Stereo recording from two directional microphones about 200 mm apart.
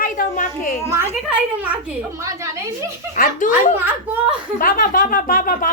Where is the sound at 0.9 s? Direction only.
10° right (ahead or behind).